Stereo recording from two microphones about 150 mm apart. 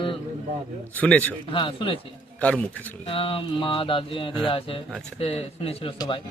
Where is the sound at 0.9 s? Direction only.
10° left (ahead or behind).